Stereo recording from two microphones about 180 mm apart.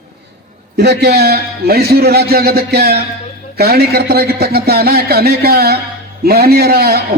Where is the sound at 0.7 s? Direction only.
65° right (ahead or behind).